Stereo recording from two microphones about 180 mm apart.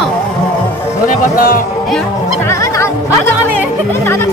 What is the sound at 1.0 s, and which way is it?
Speech, 50° left (ahead or behind).